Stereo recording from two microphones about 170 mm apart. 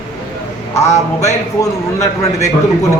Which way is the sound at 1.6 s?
15° left (ahead or behind).